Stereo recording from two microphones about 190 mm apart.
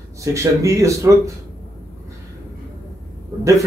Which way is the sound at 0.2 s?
15° right (ahead or behind).